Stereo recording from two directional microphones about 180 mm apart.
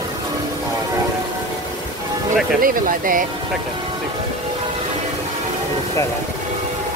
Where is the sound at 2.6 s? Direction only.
50° right (ahead or behind).